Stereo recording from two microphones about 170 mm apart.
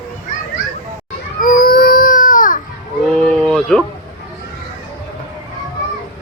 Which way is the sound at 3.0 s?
5° left (ahead or behind).